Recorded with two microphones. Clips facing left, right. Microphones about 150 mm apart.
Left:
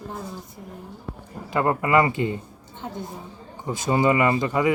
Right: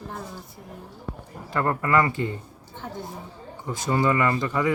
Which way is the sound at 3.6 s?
15° left (ahead or behind).